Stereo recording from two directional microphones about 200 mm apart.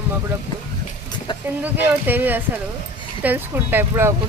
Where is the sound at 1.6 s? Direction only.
10° right (ahead or behind).